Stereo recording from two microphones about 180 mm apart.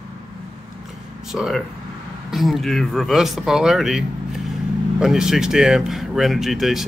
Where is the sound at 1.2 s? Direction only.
Centre (ahead or behind).